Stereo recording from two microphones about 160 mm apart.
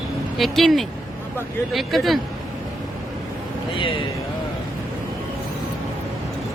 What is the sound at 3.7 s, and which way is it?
Speech, 30° left (ahead or behind).